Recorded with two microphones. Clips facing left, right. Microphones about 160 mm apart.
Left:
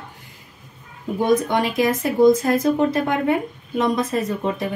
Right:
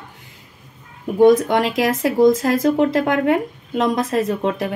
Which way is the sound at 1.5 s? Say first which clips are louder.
Right 2 dB; 85° right.